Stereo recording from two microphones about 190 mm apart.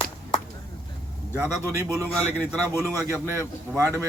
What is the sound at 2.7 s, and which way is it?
Speech, 10° left (ahead or behind).